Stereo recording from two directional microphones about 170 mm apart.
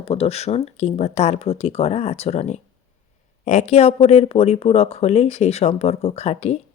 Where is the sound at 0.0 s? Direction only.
35° left (ahead or behind).